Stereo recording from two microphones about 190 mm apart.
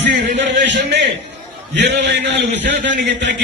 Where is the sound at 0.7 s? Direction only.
65° right (ahead or behind).